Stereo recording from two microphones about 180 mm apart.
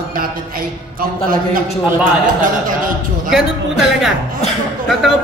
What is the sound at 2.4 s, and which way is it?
Speech, 50° right (ahead or behind).